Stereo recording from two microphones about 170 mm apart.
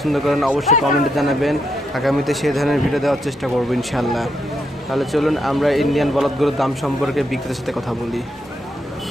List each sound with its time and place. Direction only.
0.0 s a man's voice: centre (ahead or behind)